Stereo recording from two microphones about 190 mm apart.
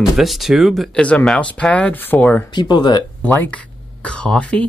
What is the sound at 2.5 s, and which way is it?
Speech, 20° left (ahead or behind).